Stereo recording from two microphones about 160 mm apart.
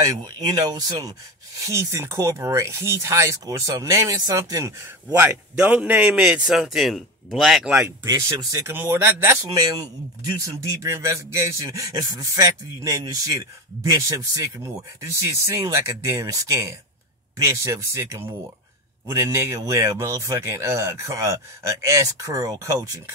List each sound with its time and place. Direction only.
0.5 s a man's voice: 25° right (ahead or behind); by 7.7 s centre (ahead or behind)
8.0 s a man's voice: 20° right (ahead or behind)
8.7 s a man's voice: 10° right (ahead or behind)